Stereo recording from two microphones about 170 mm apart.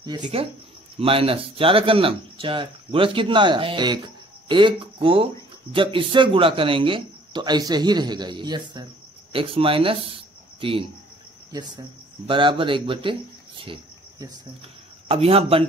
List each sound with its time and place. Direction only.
0.0 s speech: 25° right (ahead or behind)
15.0 s speech: 35° right (ahead or behind)